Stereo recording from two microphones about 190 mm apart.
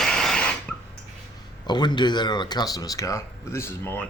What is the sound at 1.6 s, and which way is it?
A man's voice, 25° left (ahead or behind).